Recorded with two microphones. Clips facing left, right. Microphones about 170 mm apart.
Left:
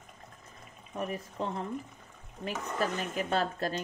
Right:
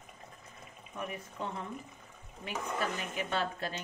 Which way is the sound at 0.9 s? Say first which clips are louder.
Left 5 dB; 40° left (ahead or behind).